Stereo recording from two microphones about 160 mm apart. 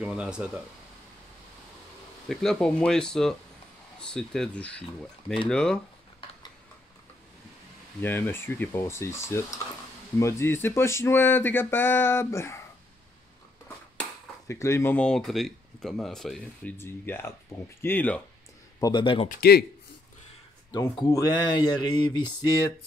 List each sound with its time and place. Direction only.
0.0 s speech: 5° right (ahead or behind)
2.2 s speech: 5° left (ahead or behind)
8.0 s speech: 15° left (ahead or behind)
14.5 s speech: 20° left (ahead or behind)
15.0 s speech: 5° left (ahead or behind)
18.8 s mantra: 25° left (ahead or behind)
19.2 s a man's voice: 70° left (ahead or behind)
21.1 s mantra: 20° left (ahead or behind)